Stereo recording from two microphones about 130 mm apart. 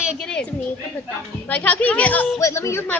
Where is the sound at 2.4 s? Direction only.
20° left (ahead or behind).